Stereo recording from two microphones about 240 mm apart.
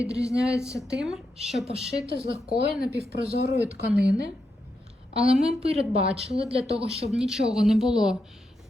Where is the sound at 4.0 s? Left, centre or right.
Right.